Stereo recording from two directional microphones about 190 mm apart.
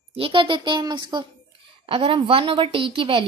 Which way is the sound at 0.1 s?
30° right (ahead or behind).